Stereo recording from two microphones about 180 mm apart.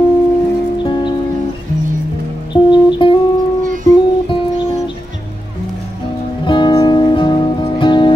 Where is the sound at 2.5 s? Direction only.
30° left (ahead or behind).